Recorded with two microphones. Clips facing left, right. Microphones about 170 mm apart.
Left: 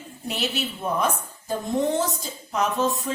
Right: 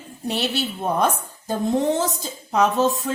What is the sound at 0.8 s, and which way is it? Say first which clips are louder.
A woman's voice: right 3 dB; 70° right (ahead or behind).